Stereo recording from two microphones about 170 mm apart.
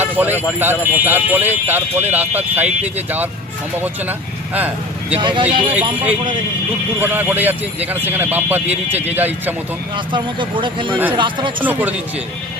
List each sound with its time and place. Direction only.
0.0 s speech: 10° right (ahead or behind)
4.5 s speech: 10° right (ahead or behind)
5.2 s speech: 30° right (ahead or behind)
7.0 s speech: 10° right (ahead or behind)
9.9 s speech: 30° right (ahead or behind)
11.6 s speech: 10° right (ahead or behind)